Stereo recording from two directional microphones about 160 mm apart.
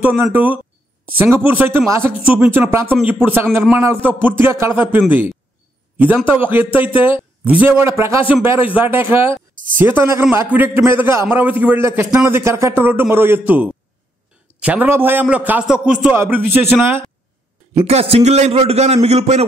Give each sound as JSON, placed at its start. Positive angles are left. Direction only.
{"t": 0.0, "sound": "a man's voice", "side_deg": -10}
{"t": 17.8, "sound": "a man's voice", "side_deg": -40}